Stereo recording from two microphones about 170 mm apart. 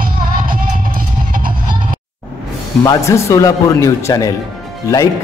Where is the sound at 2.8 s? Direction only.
20° left (ahead or behind).